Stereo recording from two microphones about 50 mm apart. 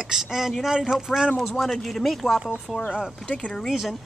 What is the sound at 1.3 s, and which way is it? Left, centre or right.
Speech, centre.